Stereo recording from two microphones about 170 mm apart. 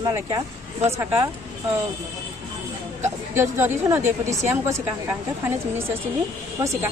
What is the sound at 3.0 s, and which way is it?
Speech, 15° right (ahead or behind).